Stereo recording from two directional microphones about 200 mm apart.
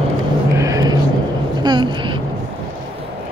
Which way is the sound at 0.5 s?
15° right (ahead or behind).